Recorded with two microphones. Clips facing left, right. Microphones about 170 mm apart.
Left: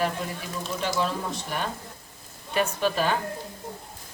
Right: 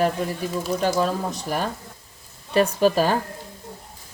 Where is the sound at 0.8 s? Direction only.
40° right (ahead or behind).